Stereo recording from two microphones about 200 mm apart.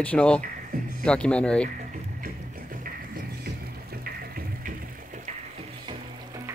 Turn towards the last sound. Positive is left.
turn(degrees=-50)  # may be behind; listen again after turning